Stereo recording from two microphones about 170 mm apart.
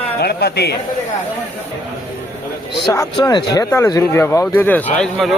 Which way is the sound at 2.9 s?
20° left (ahead or behind).